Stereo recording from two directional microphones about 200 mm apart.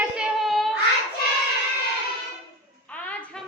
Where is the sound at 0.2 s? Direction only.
Centre (ahead or behind).